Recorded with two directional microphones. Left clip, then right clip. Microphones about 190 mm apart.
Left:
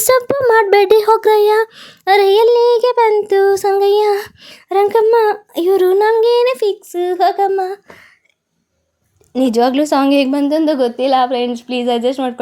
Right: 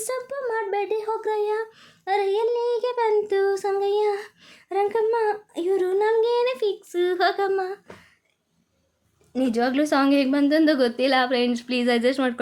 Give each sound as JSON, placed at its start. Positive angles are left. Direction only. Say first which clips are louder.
{"t": 0.0, "sound": "a sound", "louder": "left 16 dB", "side_deg": 50}
{"t": 7.0, "sound": "speech", "louder": "left 8 dB", "side_deg": 20}
{"t": 9.3, "sound": "speech", "louder": "left 10 dB", "side_deg": 30}